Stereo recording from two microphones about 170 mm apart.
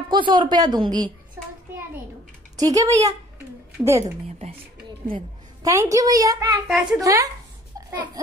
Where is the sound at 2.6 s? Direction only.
20° right (ahead or behind).